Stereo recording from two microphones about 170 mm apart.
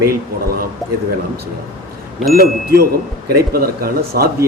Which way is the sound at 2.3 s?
65° right (ahead or behind).